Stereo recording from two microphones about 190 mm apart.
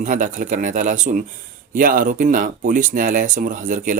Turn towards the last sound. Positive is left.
turn(degrees=-45)  # may be behind; listen again after turning